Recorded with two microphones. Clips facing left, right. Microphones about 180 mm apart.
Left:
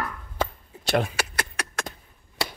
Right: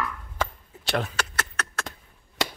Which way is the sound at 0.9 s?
10° left (ahead or behind).